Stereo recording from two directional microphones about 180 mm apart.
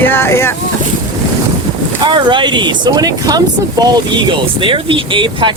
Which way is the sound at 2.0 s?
25° right (ahead or behind).